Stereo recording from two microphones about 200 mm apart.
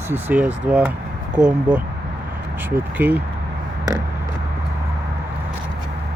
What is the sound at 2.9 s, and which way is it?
Speech, 10° right (ahead or behind).